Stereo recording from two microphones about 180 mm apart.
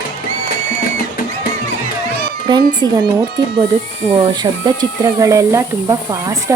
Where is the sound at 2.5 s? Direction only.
25° right (ahead or behind).